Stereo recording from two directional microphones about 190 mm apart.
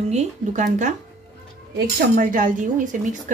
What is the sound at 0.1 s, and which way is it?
Speech, 40° right (ahead or behind).